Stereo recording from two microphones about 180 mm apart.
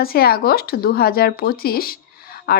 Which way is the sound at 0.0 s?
55° left (ahead or behind).